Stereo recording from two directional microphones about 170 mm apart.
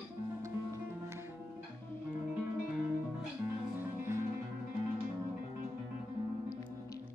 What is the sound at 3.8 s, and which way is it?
Music, 15° right (ahead or behind).